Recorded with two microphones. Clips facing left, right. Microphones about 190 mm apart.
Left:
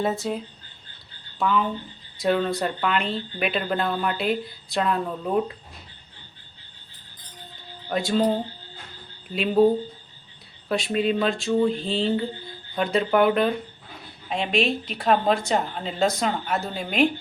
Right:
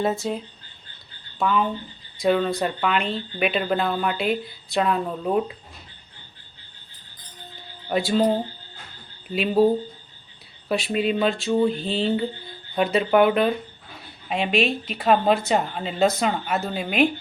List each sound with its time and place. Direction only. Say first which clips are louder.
0.0 s speech: right 1 dB; centre (ahead or behind)
1.4 s speech: right 1 dB; 5° right (ahead or behind)
7.9 s speech: right 2 dB; 5° right (ahead or behind)
9.3 s speech: even; 5° right (ahead or behind)
10.7 s speech: even; 5° right (ahead or behind)